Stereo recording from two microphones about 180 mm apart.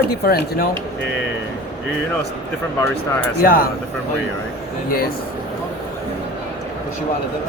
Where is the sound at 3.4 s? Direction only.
55° left (ahead or behind).